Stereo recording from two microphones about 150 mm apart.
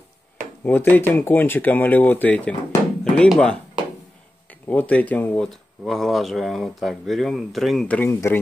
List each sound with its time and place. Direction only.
0.7 s speech: 15° left (ahead or behind)
8.1 s speech: 20° left (ahead or behind)